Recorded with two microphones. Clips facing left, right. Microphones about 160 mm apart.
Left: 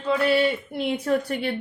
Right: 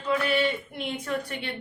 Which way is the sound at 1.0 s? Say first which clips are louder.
Left 9 dB; 40° left (ahead or behind).